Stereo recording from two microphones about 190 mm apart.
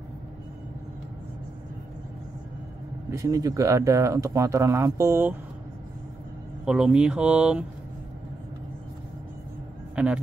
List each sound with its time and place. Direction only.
3.1 s speech: 15° right (ahead or behind)
6.6 s speech: 5° right (ahead or behind)
9.9 s speech: 5° right (ahead or behind)